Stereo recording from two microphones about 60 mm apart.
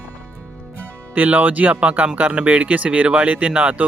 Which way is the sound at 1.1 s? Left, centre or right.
Right.